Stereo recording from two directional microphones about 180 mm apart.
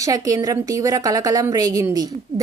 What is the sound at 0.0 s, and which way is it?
A woman's voice, 20° right (ahead or behind).